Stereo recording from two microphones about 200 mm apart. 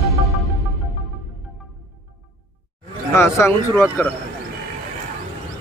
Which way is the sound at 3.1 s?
10° left (ahead or behind).